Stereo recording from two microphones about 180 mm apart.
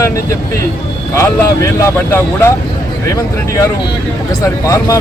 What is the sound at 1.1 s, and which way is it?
Speech, 15° left (ahead or behind).